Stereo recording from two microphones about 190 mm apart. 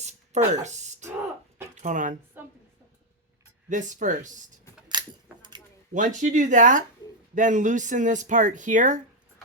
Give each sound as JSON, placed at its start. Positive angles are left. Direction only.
{"t": 0.0, "sound": "a sound", "side_deg": -35}
{"t": 1.7, "sound": "speech", "side_deg": -40}
{"t": 2.4, "sound": "a sound", "side_deg": -10}
{"t": 3.7, "sound": "speech", "side_deg": -40}
{"t": 4.9, "sound": "coin", "side_deg": -20}
{"t": 5.9, "sound": "speech", "side_deg": -40}